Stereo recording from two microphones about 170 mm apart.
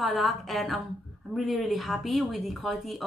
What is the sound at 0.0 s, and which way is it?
A woman's voice, centre (ahead or behind).